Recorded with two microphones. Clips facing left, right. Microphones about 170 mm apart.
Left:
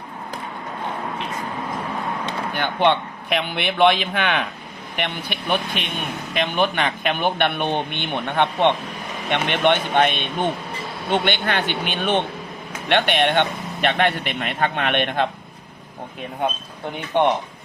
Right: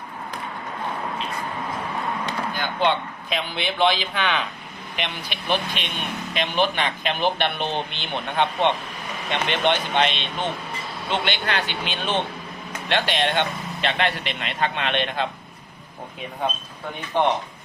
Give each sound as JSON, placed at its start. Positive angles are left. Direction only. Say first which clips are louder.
{"t": 2.5, "sound": "a man's voice", "louder": "left 4 dB", "side_deg": 65}